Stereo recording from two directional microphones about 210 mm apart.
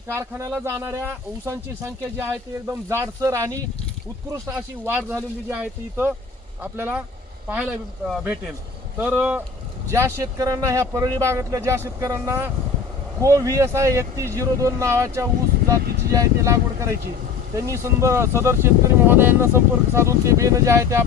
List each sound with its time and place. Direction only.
0.1 s speech: 15° right (ahead or behind)